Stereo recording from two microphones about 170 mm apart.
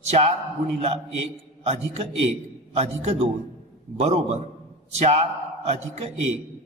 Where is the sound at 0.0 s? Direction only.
40° right (ahead or behind).